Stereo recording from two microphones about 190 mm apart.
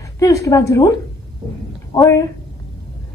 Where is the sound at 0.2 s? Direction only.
15° left (ahead or behind).